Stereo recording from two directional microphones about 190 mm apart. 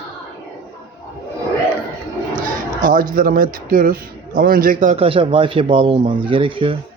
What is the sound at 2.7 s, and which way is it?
A man's voice, 45° right (ahead or behind).